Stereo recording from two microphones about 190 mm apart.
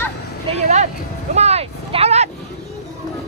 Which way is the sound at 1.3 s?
35° right (ahead or behind).